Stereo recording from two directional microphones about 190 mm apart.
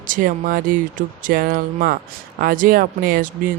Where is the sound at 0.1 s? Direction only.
45° right (ahead or behind).